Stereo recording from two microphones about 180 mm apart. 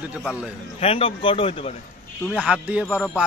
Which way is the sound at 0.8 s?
30° left (ahead or behind).